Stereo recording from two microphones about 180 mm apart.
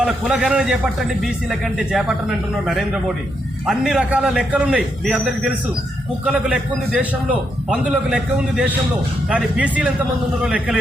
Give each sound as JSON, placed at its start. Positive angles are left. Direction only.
{"t": 0.0, "sound": "a man's voice", "side_deg": -5}
{"t": 3.7, "sound": "a man's voice", "side_deg": -5}